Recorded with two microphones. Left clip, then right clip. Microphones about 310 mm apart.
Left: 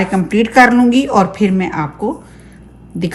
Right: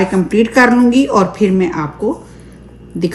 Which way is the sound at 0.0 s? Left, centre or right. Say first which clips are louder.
Right 2 dB; left.